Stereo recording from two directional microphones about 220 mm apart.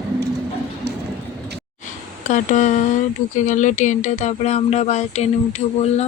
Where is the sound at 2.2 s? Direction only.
35° left (ahead or behind).